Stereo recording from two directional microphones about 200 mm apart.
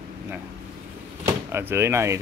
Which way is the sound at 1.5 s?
10° right (ahead or behind).